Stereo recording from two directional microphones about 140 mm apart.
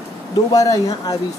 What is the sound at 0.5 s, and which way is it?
Speech, 25° left (ahead or behind).